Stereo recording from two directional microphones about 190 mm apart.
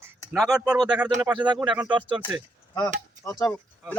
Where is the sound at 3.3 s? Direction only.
20° left (ahead or behind).